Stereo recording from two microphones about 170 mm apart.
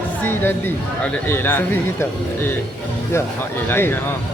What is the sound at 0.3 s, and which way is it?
Speech, 10° left (ahead or behind).